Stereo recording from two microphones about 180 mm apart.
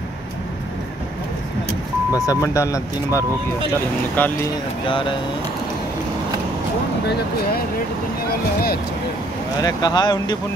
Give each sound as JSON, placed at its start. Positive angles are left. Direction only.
{"t": 2.1, "sound": "speech", "side_deg": 15}
{"t": 4.8, "sound": "speech", "side_deg": 30}
{"t": 9.6, "sound": "speech", "side_deg": 20}